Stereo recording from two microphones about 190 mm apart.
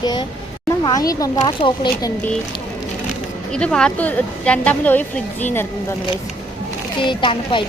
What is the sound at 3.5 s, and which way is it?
A woman's voice, 5° left (ahead or behind).